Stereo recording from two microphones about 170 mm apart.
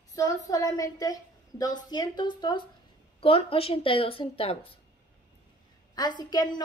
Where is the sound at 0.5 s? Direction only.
20° left (ahead or behind).